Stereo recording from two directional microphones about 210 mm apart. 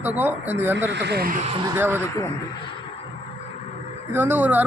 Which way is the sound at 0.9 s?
55° right (ahead or behind).